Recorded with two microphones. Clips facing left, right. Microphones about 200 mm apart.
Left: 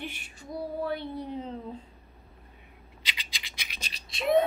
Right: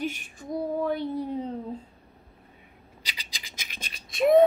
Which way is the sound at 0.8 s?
45° right (ahead or behind).